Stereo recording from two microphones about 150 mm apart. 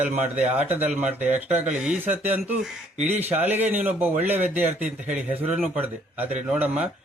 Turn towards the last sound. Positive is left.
turn(degrees=-10)  # may be behind; listen again after turning